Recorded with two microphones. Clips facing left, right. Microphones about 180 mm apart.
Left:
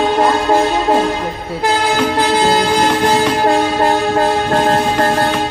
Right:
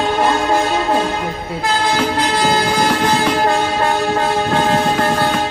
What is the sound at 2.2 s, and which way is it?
Train, 15° left (ahead or behind).